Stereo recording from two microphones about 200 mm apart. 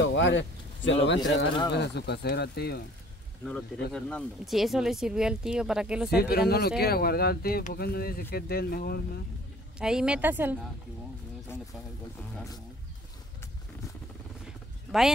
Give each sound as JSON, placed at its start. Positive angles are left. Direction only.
{"t": 0.0, "sound": "speech", "side_deg": 65}
{"t": 3.9, "sound": "speech", "side_deg": 0}
{"t": 6.1, "sound": "speech", "side_deg": 50}
{"t": 9.8, "sound": "speech", "side_deg": -5}
{"t": 11.5, "sound": "speech", "side_deg": 10}
{"t": 14.4, "sound": "vehicle", "side_deg": 0}